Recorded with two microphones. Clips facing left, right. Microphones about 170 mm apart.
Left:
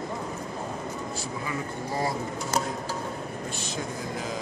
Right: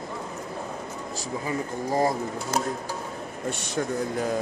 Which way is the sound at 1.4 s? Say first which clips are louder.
Right 6 dB; 45° right (ahead or behind).